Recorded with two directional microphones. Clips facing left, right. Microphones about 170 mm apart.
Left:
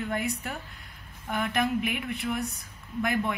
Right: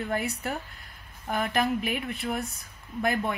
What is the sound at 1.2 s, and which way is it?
Speech, 35° right (ahead or behind).